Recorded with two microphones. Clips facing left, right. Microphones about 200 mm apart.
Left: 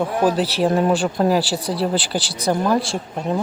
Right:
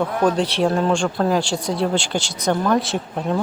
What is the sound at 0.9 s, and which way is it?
Speech, 5° left (ahead or behind).